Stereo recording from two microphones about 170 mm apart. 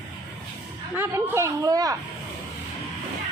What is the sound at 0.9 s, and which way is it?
Speech, 15° right (ahead or behind).